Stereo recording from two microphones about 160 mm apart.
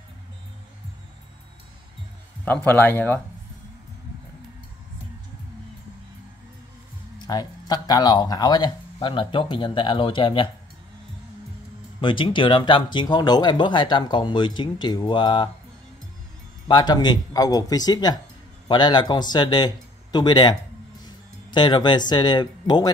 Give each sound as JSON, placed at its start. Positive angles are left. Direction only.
{"t": 2.4, "sound": "a man's voice", "side_deg": 10}
{"t": 7.2, "sound": "speech", "side_deg": 25}
{"t": 12.0, "sound": "speech", "side_deg": 30}
{"t": 16.6, "sound": "speech", "side_deg": 25}